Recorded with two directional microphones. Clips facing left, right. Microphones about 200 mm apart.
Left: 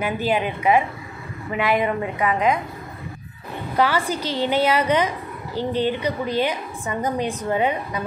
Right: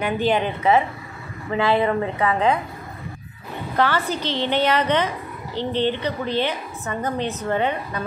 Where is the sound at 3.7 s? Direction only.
10° left (ahead or behind).